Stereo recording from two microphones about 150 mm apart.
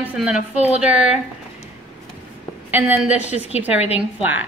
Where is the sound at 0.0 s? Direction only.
5° right (ahead or behind).